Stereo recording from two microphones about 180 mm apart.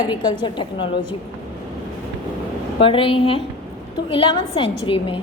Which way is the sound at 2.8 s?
30° left (ahead or behind).